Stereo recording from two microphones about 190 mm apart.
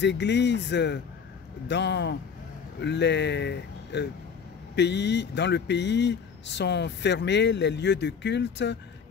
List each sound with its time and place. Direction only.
0.0 s speech: 65° left (ahead or behind)